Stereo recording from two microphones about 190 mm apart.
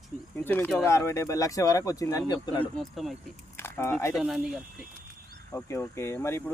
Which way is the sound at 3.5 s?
15° left (ahead or behind).